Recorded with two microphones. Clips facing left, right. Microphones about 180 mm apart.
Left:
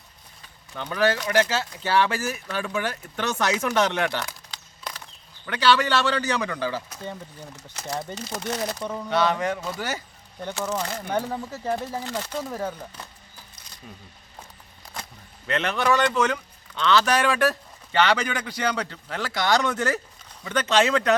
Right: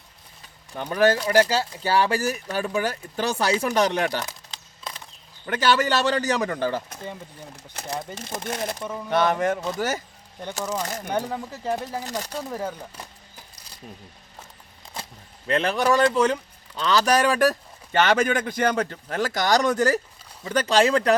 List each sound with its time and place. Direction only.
0.8 s speech: 45° right (ahead or behind)
4.3 s a sound: 25° right (ahead or behind)
5.5 s speech: 45° right (ahead or behind)
8.1 s speech: 10° right (ahead or behind)
9.0 s speech: 50° right (ahead or behind)
10.6 s speech: 10° right (ahead or behind)
13.8 s speech: 40° right (ahead or behind)
15.4 s speech: 30° right (ahead or behind)